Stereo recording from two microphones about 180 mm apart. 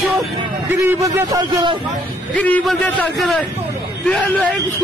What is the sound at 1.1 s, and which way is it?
Speech, 20° right (ahead or behind).